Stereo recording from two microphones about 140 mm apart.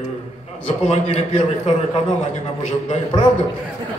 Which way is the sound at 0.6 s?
50° left (ahead or behind).